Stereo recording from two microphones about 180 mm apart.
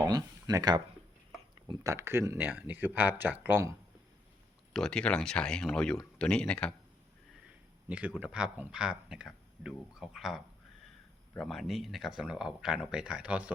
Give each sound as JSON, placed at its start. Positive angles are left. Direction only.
{"t": 0.0, "sound": "speech", "side_deg": -20}
{"t": 4.7, "sound": "speech", "side_deg": 5}
{"t": 7.9, "sound": "speech", "side_deg": -5}